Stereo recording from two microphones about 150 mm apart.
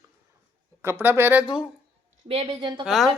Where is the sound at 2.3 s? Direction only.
40° right (ahead or behind).